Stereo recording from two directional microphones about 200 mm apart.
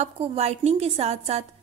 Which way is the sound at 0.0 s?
30° right (ahead or behind).